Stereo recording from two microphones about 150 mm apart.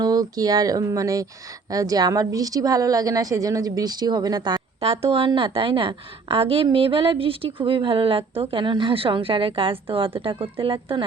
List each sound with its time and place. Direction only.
0.0 s a woman's voice: 25° right (ahead or behind)
4.8 s a woman's voice: 40° right (ahead or behind)